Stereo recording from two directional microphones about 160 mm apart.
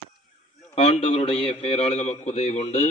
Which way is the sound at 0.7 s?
40° left (ahead or behind).